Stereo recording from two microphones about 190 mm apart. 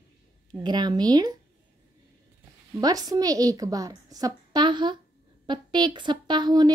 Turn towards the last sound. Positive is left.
turn(degrees=-20)  # may be behind; listen again after turning